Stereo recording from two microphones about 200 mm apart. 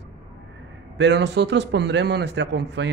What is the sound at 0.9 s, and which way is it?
A man's voice, 60° right (ahead or behind).